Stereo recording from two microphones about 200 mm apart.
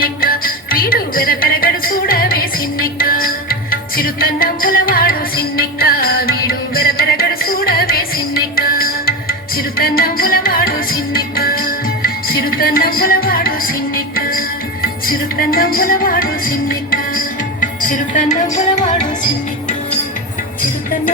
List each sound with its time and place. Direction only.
0.0 s music: 45° left (ahead or behind)